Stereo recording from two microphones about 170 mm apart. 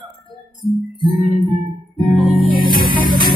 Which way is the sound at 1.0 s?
30° right (ahead or behind).